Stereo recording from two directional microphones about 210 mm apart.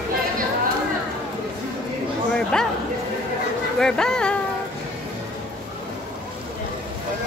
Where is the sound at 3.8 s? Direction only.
5° left (ahead or behind).